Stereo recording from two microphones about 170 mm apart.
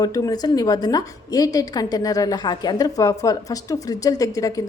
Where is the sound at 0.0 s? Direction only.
20° left (ahead or behind).